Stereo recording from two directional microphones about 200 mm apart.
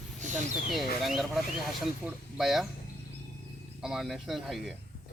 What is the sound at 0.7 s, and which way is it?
Speech, centre (ahead or behind).